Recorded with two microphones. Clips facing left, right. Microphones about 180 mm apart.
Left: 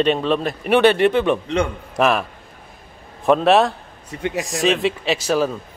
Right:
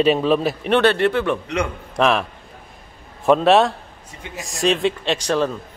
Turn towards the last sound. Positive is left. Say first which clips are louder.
# left 1 dB
turn(degrees=5)  # may be behind; listen again after turning